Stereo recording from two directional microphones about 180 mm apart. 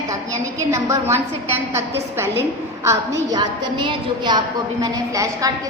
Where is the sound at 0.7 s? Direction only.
15° right (ahead or behind).